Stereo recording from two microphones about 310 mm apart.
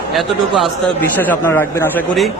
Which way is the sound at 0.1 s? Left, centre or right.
Centre.